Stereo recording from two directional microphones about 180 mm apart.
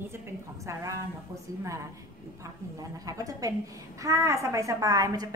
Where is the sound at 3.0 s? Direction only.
20° right (ahead or behind).